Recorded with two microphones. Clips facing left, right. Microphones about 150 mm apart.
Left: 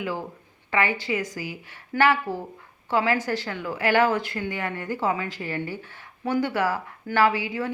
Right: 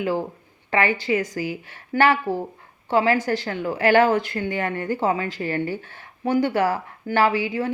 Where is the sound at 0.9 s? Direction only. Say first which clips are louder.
Right 5 dB; 50° right (ahead or behind).